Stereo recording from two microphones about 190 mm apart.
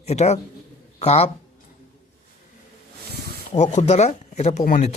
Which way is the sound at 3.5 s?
35° left (ahead or behind).